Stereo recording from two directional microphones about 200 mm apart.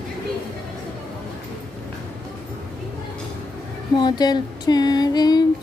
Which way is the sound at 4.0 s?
20° left (ahead or behind).